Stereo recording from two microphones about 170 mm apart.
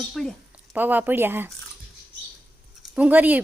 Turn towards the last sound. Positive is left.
turn(degrees=-10)  # may be behind; listen again after turning